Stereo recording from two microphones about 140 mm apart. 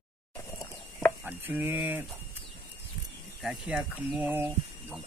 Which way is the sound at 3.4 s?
5° right (ahead or behind).